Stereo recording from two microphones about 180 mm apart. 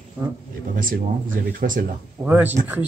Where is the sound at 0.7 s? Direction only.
50° right (ahead or behind).